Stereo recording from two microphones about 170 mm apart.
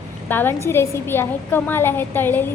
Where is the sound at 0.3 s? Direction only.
10° left (ahead or behind).